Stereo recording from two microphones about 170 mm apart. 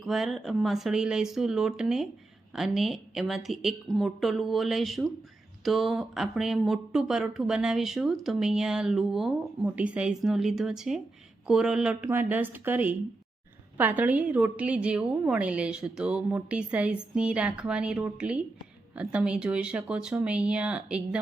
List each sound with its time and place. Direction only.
0.0 s a woman's voice: centre (ahead or behind)